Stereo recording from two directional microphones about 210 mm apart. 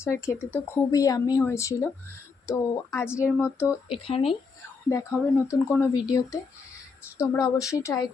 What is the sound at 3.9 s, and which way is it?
Speech, 25° left (ahead or behind).